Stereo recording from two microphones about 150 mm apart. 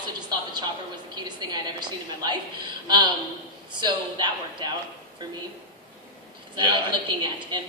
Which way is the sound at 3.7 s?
30° right (ahead or behind).